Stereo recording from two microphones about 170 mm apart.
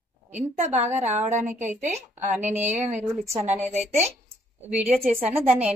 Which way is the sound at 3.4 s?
45° right (ahead or behind).